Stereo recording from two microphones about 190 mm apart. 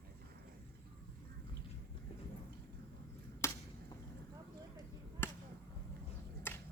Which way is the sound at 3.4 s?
15° left (ahead or behind).